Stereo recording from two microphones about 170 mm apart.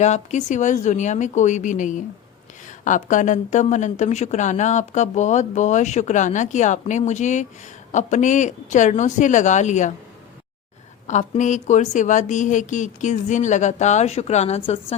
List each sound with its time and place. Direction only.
0.0 s speech: 45° left (ahead or behind)
11.0 s speech: 45° left (ahead or behind)